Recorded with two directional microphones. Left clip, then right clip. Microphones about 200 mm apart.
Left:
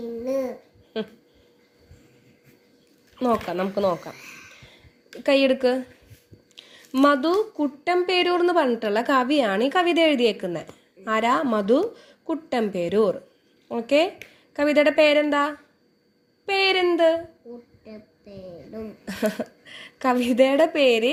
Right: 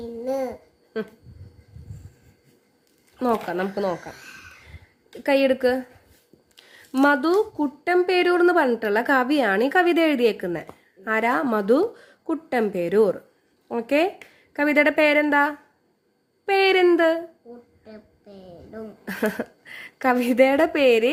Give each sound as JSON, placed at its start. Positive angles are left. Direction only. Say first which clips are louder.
{"t": 0.3, "sound": "babbling", "louder": "even", "side_deg": -20}
{"t": 3.2, "sound": "speech", "louder": "even", "side_deg": -10}
{"t": 4.1, "sound": "a woman's voice", "louder": "even", "side_deg": -20}
{"t": 19.0, "sound": "a woman's voice", "louder": "right 1 dB", "side_deg": -20}